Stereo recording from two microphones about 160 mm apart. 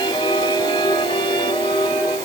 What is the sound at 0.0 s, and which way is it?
Music, 30° left (ahead or behind).